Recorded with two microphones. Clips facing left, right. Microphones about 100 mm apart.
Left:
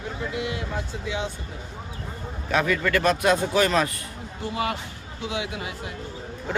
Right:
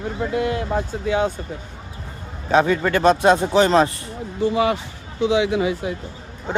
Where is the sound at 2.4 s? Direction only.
30° right (ahead or behind).